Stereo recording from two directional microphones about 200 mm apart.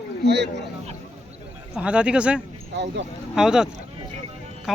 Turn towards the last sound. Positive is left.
turn(degrees=0)  # may be behind; listen again after turning